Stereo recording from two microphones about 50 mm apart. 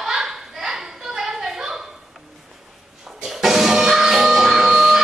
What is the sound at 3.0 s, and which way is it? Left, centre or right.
Music, centre.